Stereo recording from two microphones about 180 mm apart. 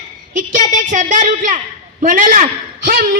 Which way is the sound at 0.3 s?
45° right (ahead or behind).